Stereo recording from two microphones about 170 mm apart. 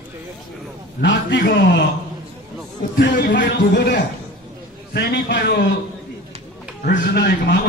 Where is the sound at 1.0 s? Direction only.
90° left.